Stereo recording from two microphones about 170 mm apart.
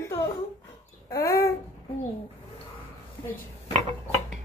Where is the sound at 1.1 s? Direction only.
15° left (ahead or behind).